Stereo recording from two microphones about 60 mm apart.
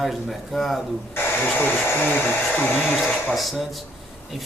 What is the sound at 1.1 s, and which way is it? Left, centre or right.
Hair dryer, left.